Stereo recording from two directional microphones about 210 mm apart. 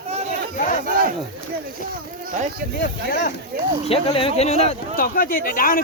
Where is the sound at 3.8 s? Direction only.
25° left (ahead or behind).